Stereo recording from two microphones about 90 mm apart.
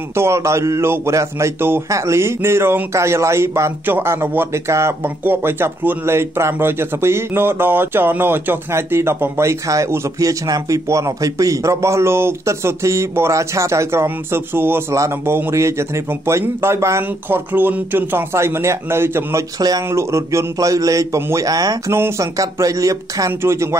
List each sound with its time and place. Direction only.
0.1 s speech: 30° right (ahead or behind)
17.5 s speech: 20° right (ahead or behind); by 21.9 s 45° right (ahead or behind)
21.9 s speech: 30° right (ahead or behind)